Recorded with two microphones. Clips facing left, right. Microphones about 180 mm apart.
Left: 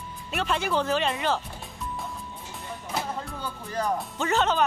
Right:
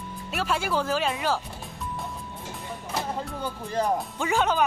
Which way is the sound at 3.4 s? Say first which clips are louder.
Right 3 dB; 20° right (ahead or behind).